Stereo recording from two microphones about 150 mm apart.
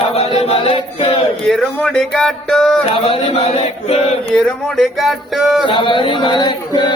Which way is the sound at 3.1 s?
45° left (ahead or behind).